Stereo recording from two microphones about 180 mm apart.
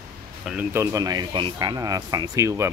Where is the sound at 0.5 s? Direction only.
10° right (ahead or behind).